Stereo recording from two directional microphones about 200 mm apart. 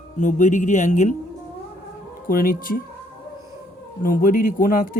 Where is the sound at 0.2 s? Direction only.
40° left (ahead or behind).